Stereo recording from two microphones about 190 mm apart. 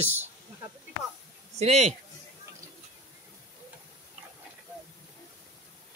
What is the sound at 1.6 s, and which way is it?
Speech, 35° right (ahead or behind).